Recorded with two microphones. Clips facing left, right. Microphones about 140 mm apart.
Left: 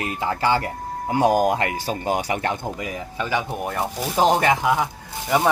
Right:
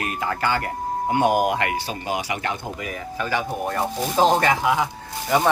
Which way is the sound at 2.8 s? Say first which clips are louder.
Left 1 dB; 20° left (ahead or behind).